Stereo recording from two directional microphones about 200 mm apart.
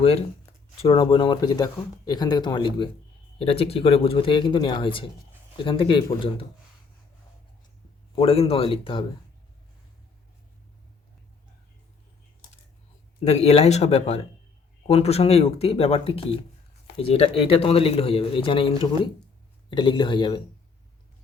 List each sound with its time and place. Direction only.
0.8 s speech: 25° left (ahead or behind)
8.1 s speech: 30° left (ahead or behind)
13.1 s speech: 30° left (ahead or behind)